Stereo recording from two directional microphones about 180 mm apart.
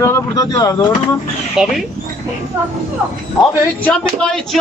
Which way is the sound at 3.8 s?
5° left (ahead or behind).